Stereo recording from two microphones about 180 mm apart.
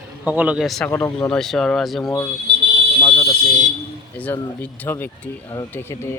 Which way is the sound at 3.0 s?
20° left (ahead or behind).